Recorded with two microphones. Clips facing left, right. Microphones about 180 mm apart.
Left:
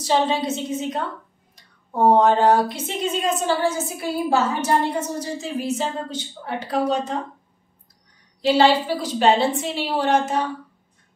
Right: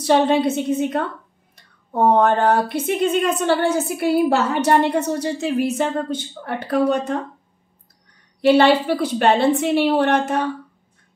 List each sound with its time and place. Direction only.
0.0 s a woman's voice: 60° right (ahead or behind)
8.4 s a woman's voice: 60° right (ahead or behind)